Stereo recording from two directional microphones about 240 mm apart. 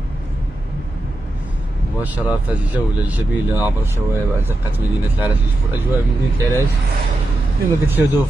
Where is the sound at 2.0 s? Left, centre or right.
Centre.